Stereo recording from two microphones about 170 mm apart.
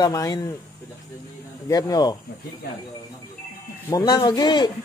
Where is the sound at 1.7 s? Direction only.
25° left (ahead or behind).